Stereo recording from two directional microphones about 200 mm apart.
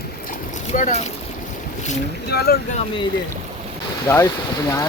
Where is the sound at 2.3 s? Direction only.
55° left (ahead or behind).